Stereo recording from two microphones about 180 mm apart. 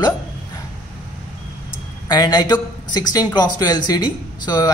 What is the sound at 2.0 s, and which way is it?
Speech, 20° left (ahead or behind).